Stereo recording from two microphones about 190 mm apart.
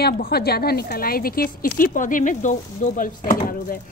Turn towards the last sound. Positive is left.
turn(degrees=45)  # may be behind; listen again after turning